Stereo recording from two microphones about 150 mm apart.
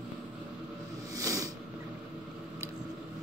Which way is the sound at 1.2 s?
20° right (ahead or behind).